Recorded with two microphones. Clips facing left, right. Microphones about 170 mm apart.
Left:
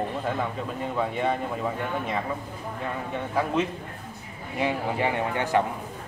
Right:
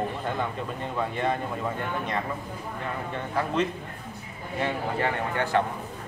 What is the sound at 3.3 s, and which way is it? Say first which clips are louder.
A man's voice: left 1 dB; 5° left (ahead or behind).